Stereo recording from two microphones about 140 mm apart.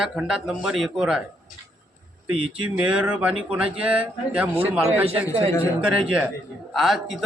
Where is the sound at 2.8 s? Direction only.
5° right (ahead or behind).